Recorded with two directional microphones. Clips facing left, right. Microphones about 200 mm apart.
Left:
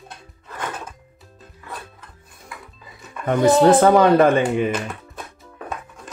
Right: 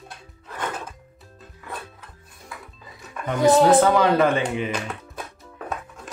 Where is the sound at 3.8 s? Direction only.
50° left (ahead or behind).